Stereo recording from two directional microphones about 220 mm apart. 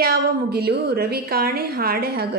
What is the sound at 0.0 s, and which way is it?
A woman's voice, 45° right (ahead or behind).